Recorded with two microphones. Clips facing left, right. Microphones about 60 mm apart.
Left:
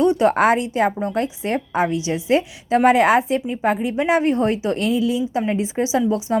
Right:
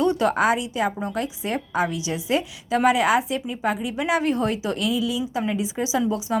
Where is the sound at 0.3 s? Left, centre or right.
Left.